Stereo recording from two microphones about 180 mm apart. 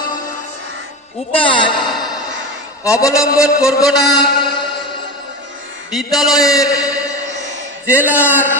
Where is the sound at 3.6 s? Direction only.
Centre (ahead or behind).